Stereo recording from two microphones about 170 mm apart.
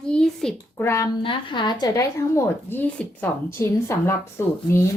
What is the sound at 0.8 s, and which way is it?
Speech, 15° left (ahead or behind).